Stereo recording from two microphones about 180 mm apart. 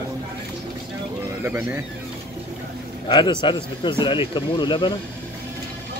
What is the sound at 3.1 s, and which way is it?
Speech, 25° left (ahead or behind).